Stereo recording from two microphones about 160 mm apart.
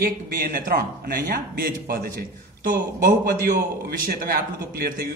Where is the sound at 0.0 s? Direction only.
60° right (ahead or behind).